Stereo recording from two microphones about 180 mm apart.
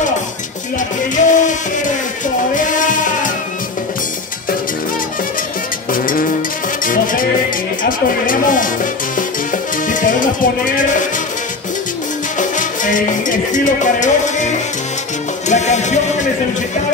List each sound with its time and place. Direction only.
1.1 s music: 45° left (ahead or behind)
5.9 s music: 50° left (ahead or behind)
9.8 s music: 45° left (ahead or behind)
12.4 s music: 45° left (ahead or behind)